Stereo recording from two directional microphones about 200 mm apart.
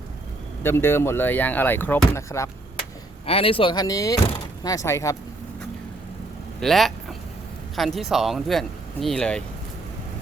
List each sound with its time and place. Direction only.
0.6 s speech: 10° left (ahead or behind)
3.2 s speech: 30° left (ahead or behind)
6.6 s vehicle: centre (ahead or behind)
7.8 s speech: centre (ahead or behind)